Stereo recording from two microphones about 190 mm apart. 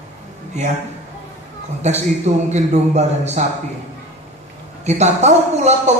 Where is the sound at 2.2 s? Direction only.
35° right (ahead or behind).